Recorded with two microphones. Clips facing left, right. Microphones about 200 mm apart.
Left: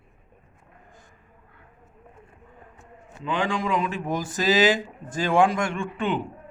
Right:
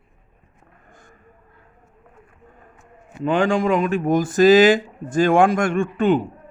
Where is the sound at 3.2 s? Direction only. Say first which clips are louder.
Right 8 dB; 45° right (ahead or behind).